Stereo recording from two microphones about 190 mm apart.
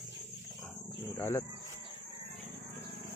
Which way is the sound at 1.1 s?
10° left (ahead or behind).